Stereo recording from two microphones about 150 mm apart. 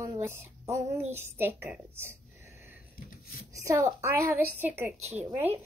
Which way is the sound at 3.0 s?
75° left (ahead or behind).